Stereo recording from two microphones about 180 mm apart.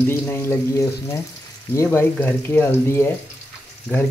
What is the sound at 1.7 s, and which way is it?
Speech, 15° left (ahead or behind).